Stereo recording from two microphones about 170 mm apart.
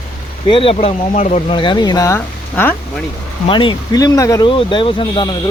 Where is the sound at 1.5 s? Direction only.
30° left (ahead or behind); by 2.8 s 10° left (ahead or behind).